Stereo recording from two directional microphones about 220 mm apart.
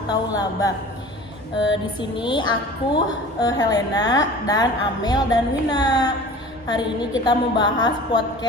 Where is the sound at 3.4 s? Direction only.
15° left (ahead or behind).